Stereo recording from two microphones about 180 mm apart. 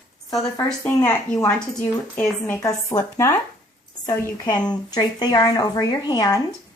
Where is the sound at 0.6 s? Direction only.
10° left (ahead or behind).